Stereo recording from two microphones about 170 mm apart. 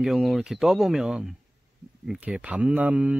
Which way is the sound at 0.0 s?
Centre (ahead or behind).